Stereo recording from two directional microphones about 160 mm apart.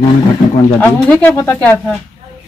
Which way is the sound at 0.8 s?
10° left (ahead or behind).